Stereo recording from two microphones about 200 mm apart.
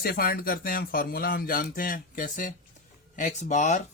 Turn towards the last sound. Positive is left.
turn(degrees=40)  # may be behind; listen again after turning